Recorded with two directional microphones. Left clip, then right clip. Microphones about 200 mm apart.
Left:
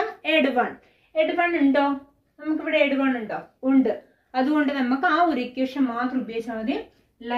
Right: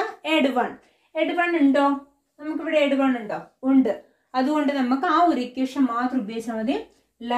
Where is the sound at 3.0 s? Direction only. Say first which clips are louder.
Right 1 dB; 20° right (ahead or behind).